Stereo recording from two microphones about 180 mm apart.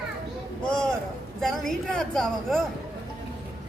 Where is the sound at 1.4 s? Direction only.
Centre (ahead or behind).